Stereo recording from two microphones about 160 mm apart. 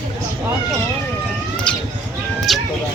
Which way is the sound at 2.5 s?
Centre (ahead or behind).